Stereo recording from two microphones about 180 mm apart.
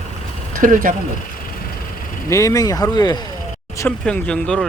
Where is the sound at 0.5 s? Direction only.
50° right (ahead or behind).